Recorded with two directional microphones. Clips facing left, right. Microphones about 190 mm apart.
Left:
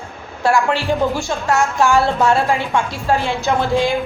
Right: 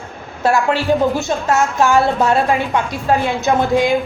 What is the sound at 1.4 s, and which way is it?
A woman's voice, 20° right (ahead or behind).